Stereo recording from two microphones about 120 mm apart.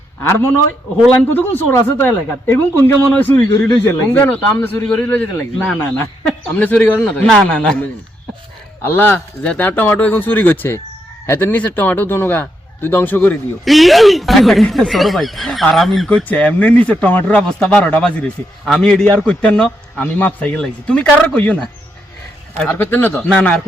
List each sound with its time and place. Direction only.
0.2 s a man's voice: 20° left (ahead or behind)
13.7 s a man's voice: centre (ahead or behind)